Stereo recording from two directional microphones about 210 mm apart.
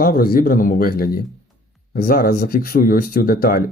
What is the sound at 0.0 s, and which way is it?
Speech, 45° left (ahead or behind).